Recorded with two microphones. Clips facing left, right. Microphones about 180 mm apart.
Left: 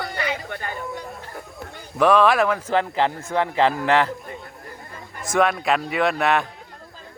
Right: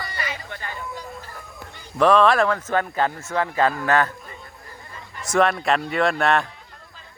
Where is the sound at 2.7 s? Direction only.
20° left (ahead or behind).